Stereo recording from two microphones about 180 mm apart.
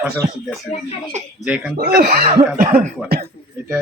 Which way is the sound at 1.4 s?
5° right (ahead or behind).